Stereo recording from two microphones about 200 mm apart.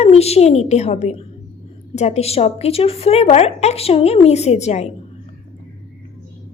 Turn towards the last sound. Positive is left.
turn(degrees=35)  # may be behind; listen again after turning